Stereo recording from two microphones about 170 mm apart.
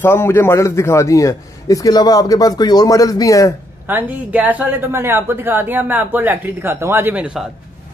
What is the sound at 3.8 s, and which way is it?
A woman's voice, 10° right (ahead or behind).